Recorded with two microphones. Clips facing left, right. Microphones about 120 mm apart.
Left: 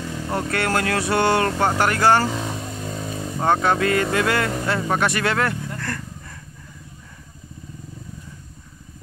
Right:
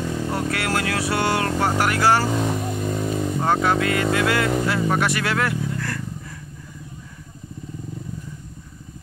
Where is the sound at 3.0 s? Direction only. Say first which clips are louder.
Right 6 dB; 15° right (ahead or behind).